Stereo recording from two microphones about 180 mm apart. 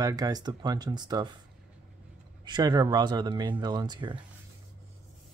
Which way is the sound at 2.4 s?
25° right (ahead or behind).